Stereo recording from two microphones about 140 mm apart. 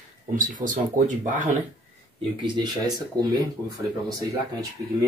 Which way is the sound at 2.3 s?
30° right (ahead or behind).